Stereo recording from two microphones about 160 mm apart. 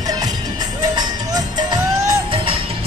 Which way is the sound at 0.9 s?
25° right (ahead or behind).